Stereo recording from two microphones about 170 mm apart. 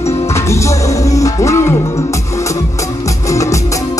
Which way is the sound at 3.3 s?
20° left (ahead or behind).